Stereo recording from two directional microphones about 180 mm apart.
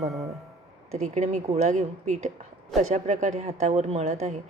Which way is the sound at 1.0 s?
40° right (ahead or behind).